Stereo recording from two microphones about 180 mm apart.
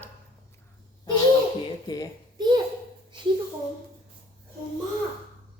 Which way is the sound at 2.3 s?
25° right (ahead or behind).